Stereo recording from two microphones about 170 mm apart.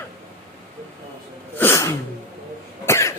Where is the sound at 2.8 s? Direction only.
15° left (ahead or behind).